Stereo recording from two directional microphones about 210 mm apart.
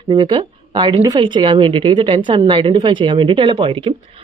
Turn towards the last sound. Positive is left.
turn(degrees=-25)  # may be behind; listen again after turning